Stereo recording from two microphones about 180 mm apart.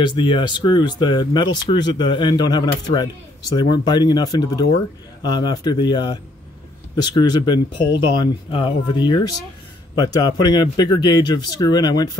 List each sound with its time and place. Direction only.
0.0 s speech: 25° left (ahead or behind)